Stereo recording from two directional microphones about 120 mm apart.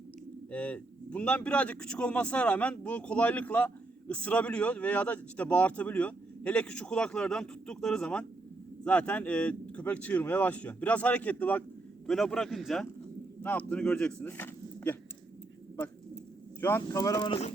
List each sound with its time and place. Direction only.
0.5 s speech: 15° left (ahead or behind)
12.0 s speech: centre (ahead or behind)
16.6 s speech: 20° left (ahead or behind); by 17.4 s 40° left (ahead or behind)